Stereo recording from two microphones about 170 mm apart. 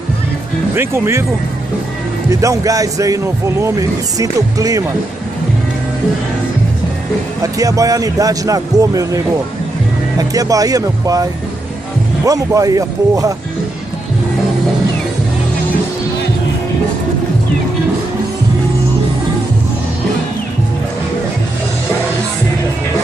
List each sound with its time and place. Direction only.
0.7 s speech: 15° right (ahead or behind)
2.4 s speech: 20° right (ahead or behind)
7.5 s speech: 20° right (ahead or behind)
12.3 s speech: 20° right (ahead or behind)